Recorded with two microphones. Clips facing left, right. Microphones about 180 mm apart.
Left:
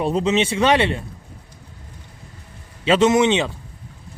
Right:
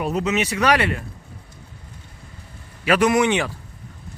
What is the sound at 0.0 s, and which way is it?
Speech, 30° left (ahead or behind).